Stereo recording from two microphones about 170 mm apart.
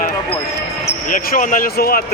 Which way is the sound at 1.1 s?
55° left (ahead or behind).